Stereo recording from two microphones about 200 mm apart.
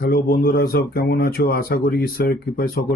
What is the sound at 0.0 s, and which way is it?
Speech, 45° left (ahead or behind).